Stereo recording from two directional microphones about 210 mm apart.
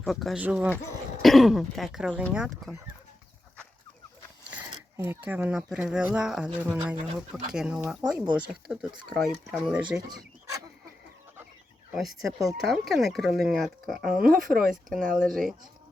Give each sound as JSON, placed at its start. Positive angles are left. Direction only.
{"t": 0.0, "sound": "speech", "side_deg": 0}
{"t": 4.5, "sound": "speech", "side_deg": -10}
{"t": 10.1, "sound": "a sound", "side_deg": -20}
{"t": 11.9, "sound": "speech", "side_deg": 0}